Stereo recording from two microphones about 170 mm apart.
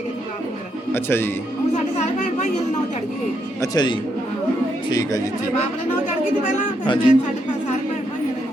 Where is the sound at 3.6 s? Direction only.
25° left (ahead or behind).